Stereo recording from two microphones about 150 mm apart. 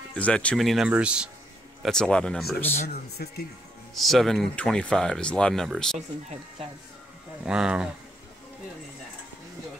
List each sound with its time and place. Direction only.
0.1 s speech: 10° left (ahead or behind); by 1.3 s 5° right (ahead or behind)
1.8 s speech: 5° left (ahead or behind)
3.2 s speech: 90° left
3.9 s speech: centre (ahead or behind)
7.4 s speech: 5° right (ahead or behind)